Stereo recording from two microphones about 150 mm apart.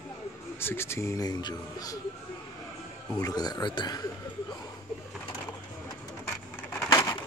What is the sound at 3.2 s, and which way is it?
Speech, 25° left (ahead or behind).